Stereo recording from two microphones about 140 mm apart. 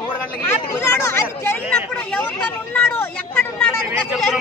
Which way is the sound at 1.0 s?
20° left (ahead or behind).